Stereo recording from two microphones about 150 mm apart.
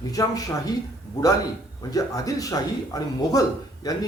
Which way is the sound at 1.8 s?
25° left (ahead or behind).